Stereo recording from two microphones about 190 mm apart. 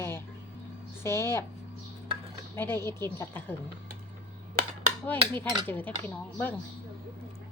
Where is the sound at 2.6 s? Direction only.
10° left (ahead or behind).